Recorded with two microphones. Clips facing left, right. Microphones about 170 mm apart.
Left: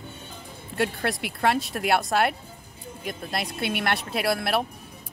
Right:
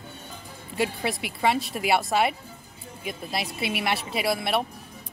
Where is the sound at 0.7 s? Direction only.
Centre (ahead or behind).